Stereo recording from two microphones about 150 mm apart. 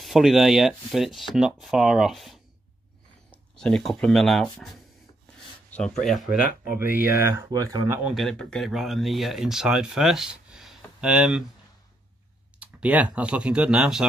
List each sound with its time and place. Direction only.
0.0 s speech: centre (ahead or behind)
7.1 s speech: 15° right (ahead or behind)
8.0 s speech: centre (ahead or behind)
12.5 s speech: 10° right (ahead or behind)